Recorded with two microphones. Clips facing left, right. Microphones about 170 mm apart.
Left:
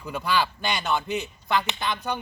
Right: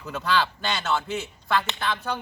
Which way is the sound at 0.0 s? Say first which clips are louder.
Even; 10° left (ahead or behind).